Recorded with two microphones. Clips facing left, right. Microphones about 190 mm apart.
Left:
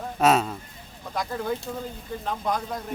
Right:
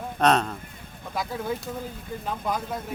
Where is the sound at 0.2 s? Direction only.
5° left (ahead or behind).